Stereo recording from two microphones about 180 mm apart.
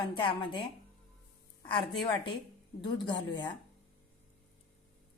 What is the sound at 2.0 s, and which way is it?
A woman's voice, 25° left (ahead or behind).